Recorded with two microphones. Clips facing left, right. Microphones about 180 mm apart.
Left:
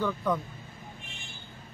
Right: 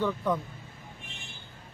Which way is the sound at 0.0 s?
Centre (ahead or behind).